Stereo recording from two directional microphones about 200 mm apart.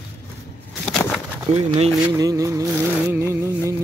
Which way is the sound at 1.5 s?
30° right (ahead or behind).